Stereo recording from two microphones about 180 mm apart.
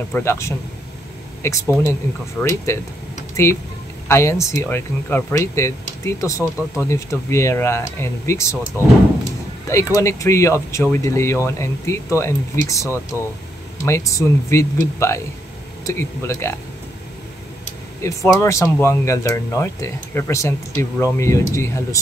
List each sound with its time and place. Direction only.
0.1 s speech: 15° left (ahead or behind)
4.1 s speech: 15° left (ahead or behind)
18.0 s speech: 15° left (ahead or behind)